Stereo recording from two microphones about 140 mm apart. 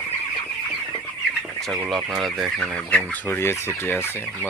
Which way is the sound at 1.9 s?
Centre (ahead or behind).